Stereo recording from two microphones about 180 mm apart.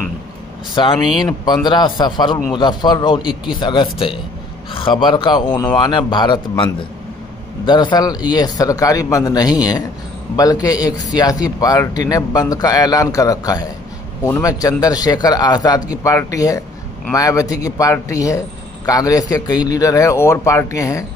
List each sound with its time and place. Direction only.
1.1 s a man's voice: 25° left (ahead or behind)
5.5 s a man's voice: 10° left (ahead or behind)
5.9 s a man's voice: 25° left (ahead or behind)